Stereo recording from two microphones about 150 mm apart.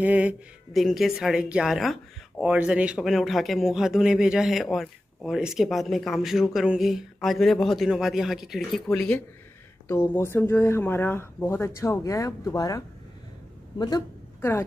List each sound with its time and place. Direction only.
0.0 s a man's voice: 10° right (ahead or behind)
9.8 s speech: 15° left (ahead or behind)